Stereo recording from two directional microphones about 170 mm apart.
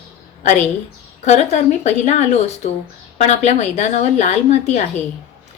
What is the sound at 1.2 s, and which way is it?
A woman's voice, 40° left (ahead or behind).